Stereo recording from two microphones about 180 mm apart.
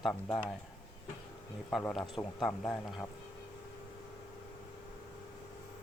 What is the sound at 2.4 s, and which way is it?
Speech, 5° left (ahead or behind).